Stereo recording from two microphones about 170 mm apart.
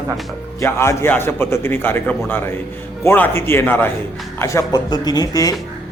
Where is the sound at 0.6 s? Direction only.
15° left (ahead or behind).